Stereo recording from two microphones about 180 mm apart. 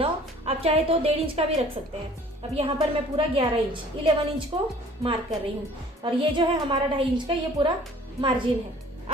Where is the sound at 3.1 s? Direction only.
30° right (ahead or behind).